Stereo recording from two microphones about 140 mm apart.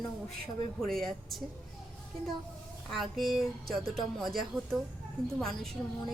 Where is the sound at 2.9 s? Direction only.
Centre (ahead or behind).